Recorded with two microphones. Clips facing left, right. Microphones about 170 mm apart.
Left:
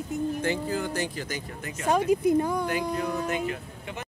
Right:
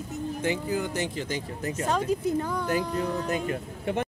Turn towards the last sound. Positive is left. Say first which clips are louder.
# right 9 dB
turn(degrees=-45)  # may be behind; listen again after turning